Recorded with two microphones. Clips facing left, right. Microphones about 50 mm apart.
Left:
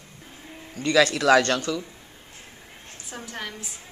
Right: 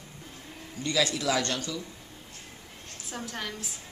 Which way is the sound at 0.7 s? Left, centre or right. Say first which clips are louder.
Left 8 dB; left.